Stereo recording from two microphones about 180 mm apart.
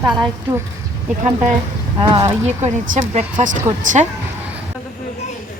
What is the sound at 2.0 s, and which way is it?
A woman's voice, 30° right (ahead or behind).